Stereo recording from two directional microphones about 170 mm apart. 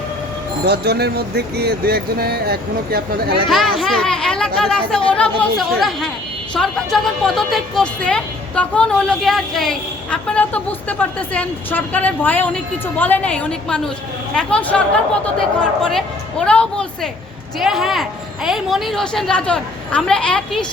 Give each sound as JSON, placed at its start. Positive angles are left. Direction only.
{"t": 0.6, "sound": "speech", "side_deg": -70}
{"t": 3.5, "sound": "a woman's voice", "side_deg": 0}
{"t": 15.8, "sound": "a woman's voice", "side_deg": 5}